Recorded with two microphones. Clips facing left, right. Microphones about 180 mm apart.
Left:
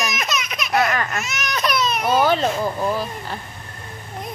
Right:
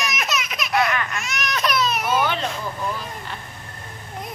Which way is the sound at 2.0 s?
35° left (ahead or behind).